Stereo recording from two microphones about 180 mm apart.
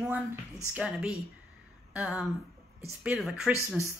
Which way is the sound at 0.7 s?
5° right (ahead or behind).